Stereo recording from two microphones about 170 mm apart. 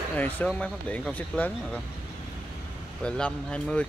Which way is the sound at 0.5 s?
5° left (ahead or behind).